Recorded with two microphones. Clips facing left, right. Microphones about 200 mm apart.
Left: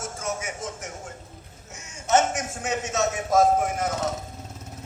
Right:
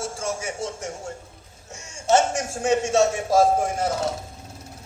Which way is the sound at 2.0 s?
30° right (ahead or behind).